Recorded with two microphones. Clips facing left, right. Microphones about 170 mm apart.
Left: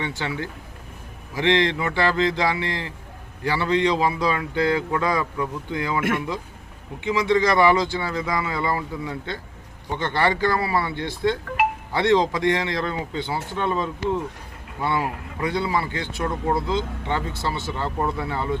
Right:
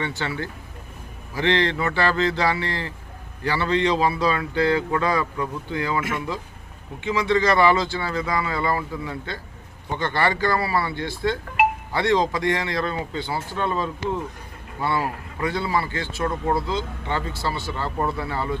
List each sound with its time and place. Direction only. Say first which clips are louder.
0.0 s a man's voice: even; 15° left (ahead or behind)
7.0 s a man's voice: left 1 dB; 15° left (ahead or behind)
16.2 s speech: even; centre (ahead or behind)
16.6 s speech: left 2 dB; 20° left (ahead or behind)